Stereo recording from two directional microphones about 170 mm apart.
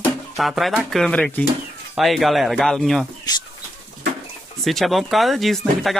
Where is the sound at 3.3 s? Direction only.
20° left (ahead or behind).